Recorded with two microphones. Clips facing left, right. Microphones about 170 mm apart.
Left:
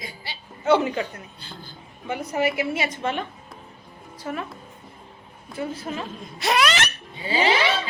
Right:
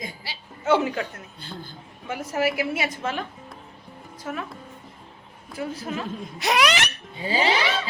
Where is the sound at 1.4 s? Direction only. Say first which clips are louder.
Right 3 dB; 50° right (ahead or behind).